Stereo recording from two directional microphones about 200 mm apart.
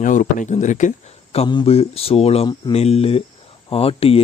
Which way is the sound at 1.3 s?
25° left (ahead or behind).